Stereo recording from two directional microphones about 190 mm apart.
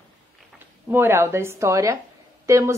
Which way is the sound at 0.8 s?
10° right (ahead or behind).